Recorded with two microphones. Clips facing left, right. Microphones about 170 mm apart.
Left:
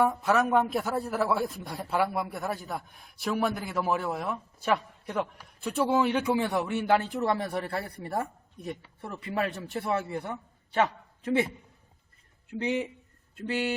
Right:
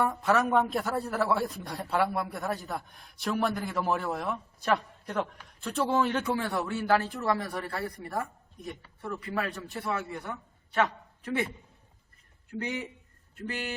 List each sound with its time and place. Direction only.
0.0 s a man's voice: centre (ahead or behind); by 10.8 s 30° left (ahead or behind)
11.2 s a man's voice: 20° left (ahead or behind)
12.5 s a man's voice: 20° left (ahead or behind)